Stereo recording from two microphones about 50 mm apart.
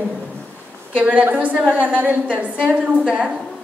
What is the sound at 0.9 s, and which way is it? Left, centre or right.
A woman's voice, right.